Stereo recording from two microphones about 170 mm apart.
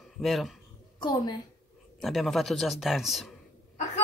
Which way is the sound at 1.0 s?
25° left (ahead or behind).